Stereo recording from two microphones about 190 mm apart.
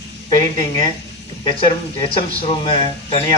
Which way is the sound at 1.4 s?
30° left (ahead or behind).